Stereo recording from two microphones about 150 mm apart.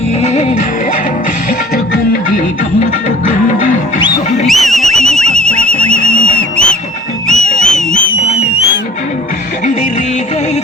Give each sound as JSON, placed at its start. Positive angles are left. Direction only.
{"t": 0.2, "sound": "music", "side_deg": 45}
{"t": 2.8, "sound": "music", "side_deg": 55}
{"t": 4.4, "sound": "a sound", "side_deg": 0}
{"t": 7.3, "sound": "music", "side_deg": 5}
{"t": 7.9, "sound": "music", "side_deg": 45}